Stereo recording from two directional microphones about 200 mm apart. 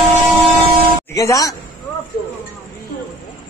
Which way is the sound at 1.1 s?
15° left (ahead or behind).